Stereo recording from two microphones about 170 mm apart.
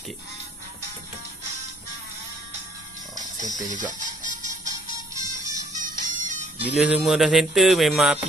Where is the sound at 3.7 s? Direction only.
50° right (ahead or behind).